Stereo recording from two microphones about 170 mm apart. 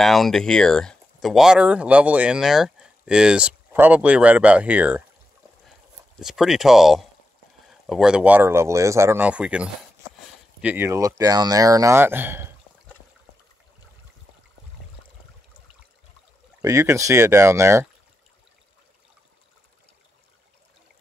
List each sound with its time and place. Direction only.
0.0 s speech: centre (ahead or behind)
6.1 s speech: centre (ahead or behind)
16.6 s speech: 20° right (ahead or behind)